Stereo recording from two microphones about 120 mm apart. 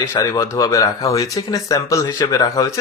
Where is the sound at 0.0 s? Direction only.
25° left (ahead or behind).